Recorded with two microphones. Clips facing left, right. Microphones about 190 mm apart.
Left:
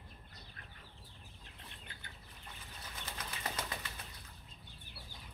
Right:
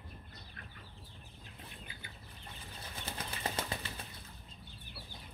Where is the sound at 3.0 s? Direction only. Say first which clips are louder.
Right 4 dB; 30° right (ahead or behind).